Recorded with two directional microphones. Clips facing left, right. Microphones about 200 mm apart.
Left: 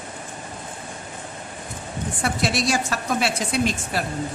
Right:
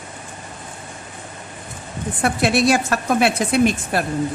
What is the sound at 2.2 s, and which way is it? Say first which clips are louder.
Speech: right 7 dB; 55° right (ahead or behind).